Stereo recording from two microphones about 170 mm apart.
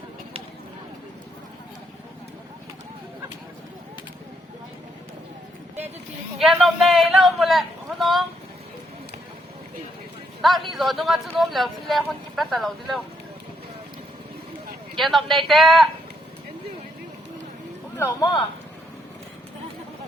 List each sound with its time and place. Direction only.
6.4 s speech: centre (ahead or behind)
10.7 s speech: centre (ahead or behind)
14.9 s speech: centre (ahead or behind)
17.9 s speech: 15° left (ahead or behind)